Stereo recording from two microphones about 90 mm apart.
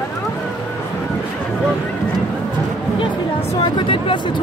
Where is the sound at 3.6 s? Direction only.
65° left (ahead or behind).